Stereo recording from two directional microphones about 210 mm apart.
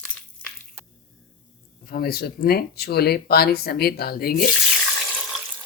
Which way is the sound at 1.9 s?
45° left (ahead or behind).